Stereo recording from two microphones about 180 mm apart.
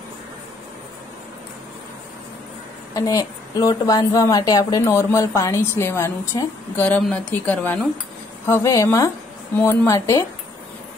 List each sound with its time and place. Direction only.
2.9 s speech: 20° left (ahead or behind)